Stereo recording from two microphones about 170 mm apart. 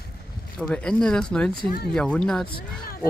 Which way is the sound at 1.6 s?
65° left (ahead or behind).